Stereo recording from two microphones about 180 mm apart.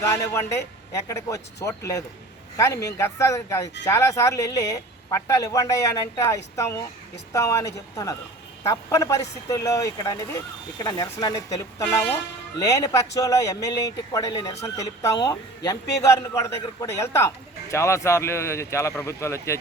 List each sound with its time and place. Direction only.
0.0 s speech: 15° left (ahead or behind)